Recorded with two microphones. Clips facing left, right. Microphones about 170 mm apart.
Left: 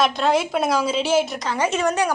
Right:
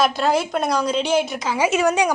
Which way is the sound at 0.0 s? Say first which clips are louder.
Even; centre (ahead or behind).